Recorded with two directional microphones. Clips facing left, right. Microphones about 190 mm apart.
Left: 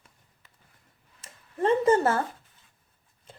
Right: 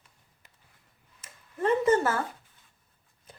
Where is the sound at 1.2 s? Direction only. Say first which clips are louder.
Left 3 dB; 30° left (ahead or behind).